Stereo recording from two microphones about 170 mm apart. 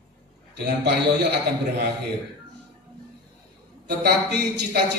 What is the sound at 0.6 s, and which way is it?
A man's voice, 70° right (ahead or behind).